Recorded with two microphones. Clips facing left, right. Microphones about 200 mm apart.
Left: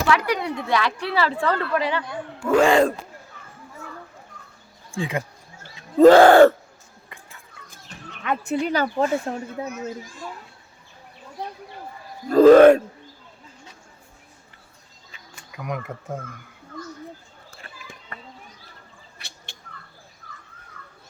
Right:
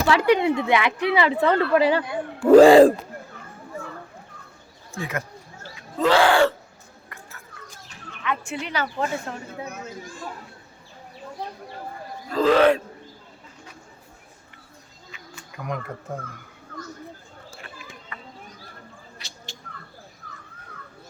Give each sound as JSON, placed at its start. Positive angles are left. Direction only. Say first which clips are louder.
{"t": 0.1, "sound": "a woman's voice", "louder": "right 5 dB", "side_deg": -25}
{"t": 2.5, "sound": "speech", "louder": "right 7 dB", "side_deg": -35}
{"t": 6.0, "sound": "a sound", "louder": "left 8 dB", "side_deg": 45}
{"t": 8.2, "sound": "speech", "louder": "left 5 dB", "side_deg": 45}
{"t": 12.3, "sound": "a sound", "louder": "left 8 dB", "side_deg": 45}
{"t": 15.5, "sound": "speech", "louder": "left 1 dB", "side_deg": 5}